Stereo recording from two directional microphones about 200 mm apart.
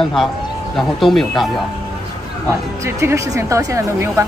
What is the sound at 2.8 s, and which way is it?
A woman's voice, 15° right (ahead or behind).